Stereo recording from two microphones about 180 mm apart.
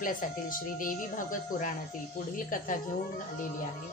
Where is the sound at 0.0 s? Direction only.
50° left (ahead or behind).